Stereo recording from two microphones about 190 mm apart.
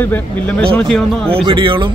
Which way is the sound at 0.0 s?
10° left (ahead or behind).